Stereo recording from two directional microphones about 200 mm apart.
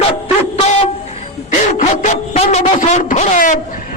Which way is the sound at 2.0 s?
35° left (ahead or behind).